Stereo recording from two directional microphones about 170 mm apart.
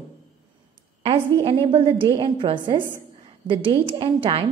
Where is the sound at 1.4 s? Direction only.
30° right (ahead or behind).